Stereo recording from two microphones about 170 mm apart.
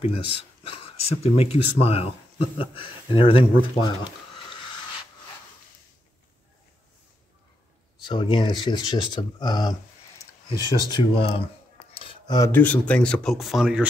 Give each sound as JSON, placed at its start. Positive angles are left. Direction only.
{"t": 0.0, "sound": "speech", "side_deg": 35}
{"t": 8.0, "sound": "speech", "side_deg": 30}
{"t": 10.8, "sound": "speech", "side_deg": 25}
{"t": 11.9, "sound": "cutlery", "side_deg": 30}
{"t": 12.4, "sound": "speech", "side_deg": 10}